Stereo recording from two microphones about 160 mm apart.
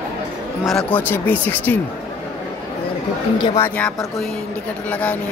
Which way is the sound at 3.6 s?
10° left (ahead or behind).